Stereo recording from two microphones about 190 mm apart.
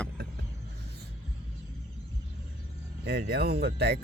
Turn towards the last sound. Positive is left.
turn(degrees=-60)  # may be behind; listen again after turning